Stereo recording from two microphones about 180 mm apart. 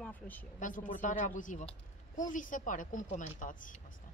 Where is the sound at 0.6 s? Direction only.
45° left (ahead or behind).